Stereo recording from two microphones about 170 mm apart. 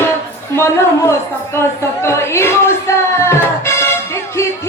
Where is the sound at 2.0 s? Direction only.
15° left (ahead or behind).